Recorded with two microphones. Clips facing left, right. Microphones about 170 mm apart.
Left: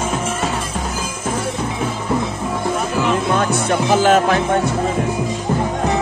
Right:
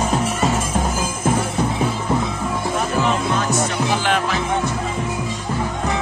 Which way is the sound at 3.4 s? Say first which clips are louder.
Left 3 dB; 55° left (ahead or behind).